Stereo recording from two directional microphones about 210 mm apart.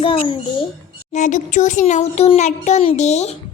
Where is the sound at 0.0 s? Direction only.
25° left (ahead or behind).